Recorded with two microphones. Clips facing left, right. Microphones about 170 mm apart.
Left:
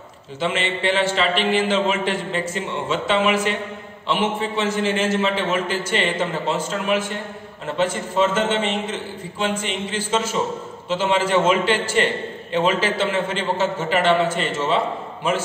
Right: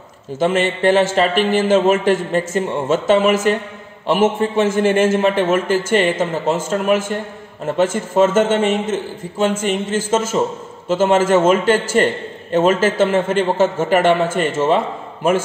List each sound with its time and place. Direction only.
0.4 s a man's voice: 45° right (ahead or behind)